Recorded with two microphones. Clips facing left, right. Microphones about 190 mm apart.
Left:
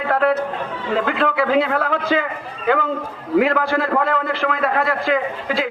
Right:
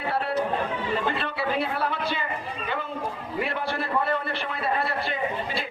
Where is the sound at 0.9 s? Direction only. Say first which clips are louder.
Left 12 dB; 90° left.